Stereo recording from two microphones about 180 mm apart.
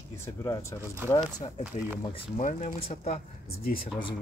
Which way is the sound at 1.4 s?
35° left (ahead or behind).